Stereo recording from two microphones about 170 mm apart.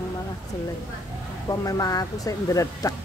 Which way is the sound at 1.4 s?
20° left (ahead or behind).